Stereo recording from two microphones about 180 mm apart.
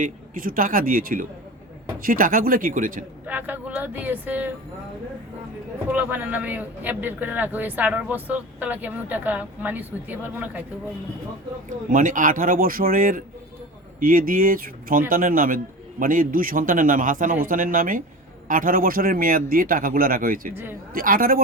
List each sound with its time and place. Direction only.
0.0 s a man's voice: 50° right (ahead or behind)
3.2 s a man's voice: 10° right (ahead or behind)
5.9 s a man's voice: 10° right (ahead or behind)
11.7 s a man's voice: 45° right (ahead or behind)